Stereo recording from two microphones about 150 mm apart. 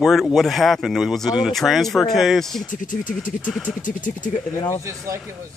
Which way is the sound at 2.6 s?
60° left (ahead or behind).